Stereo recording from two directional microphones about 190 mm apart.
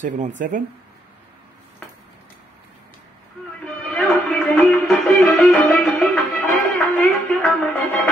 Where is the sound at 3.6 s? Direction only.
5° left (ahead or behind).